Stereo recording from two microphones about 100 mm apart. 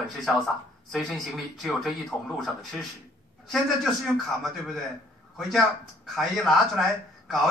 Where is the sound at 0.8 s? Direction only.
Centre (ahead or behind).